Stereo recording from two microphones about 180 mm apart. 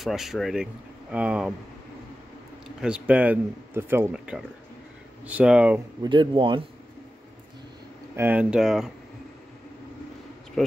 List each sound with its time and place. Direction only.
0.0 s speech: centre (ahead or behind)
2.8 s a man's voice: 5° right (ahead or behind)
6.0 s speech: 30° right (ahead or behind)
8.2 s speech: 10° right (ahead or behind)